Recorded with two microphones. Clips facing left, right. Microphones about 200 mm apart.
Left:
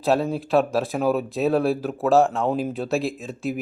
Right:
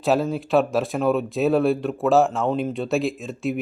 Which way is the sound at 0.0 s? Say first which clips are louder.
Even; centre (ahead or behind).